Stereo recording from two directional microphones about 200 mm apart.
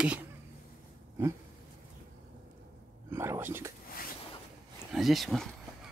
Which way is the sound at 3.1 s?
10° right (ahead or behind).